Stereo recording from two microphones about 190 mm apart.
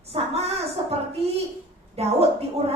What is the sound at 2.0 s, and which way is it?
Speech, 35° right (ahead or behind).